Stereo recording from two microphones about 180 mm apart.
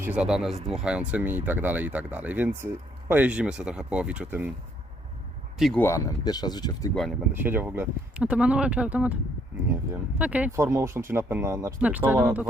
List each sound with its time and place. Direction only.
0.0 s speech: 5° right (ahead or behind)
5.5 s speech: centre (ahead or behind)
5.8 s speech: 15° left (ahead or behind)
7.3 s speech: 10° right (ahead or behind)
10.2 s speech: 5° right (ahead or behind)